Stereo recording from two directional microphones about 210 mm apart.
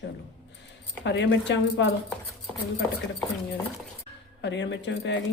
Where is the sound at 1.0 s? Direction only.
55° left (ahead or behind).